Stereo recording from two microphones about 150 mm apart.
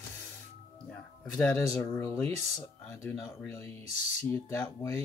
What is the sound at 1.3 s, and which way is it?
Speech, 15° left (ahead or behind).